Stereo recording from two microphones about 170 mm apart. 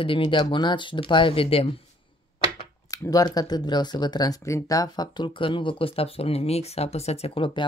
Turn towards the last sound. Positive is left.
turn(degrees=35)  # may be behind; listen again after turning